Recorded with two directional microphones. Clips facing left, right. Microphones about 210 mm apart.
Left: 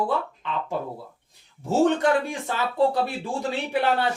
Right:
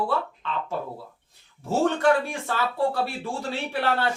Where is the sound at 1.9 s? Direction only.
20° left (ahead or behind).